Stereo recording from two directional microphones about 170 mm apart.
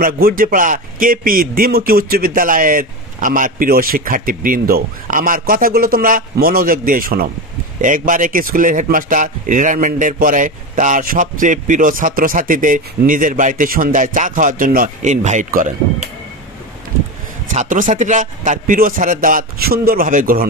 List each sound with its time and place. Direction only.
0.0 s a man's voice: 55° right (ahead or behind)
17.5 s a man's voice: 50° right (ahead or behind)